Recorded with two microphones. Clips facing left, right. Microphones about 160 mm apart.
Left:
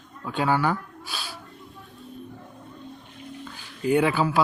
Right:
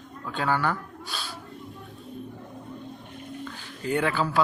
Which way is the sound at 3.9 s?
15° left (ahead or behind).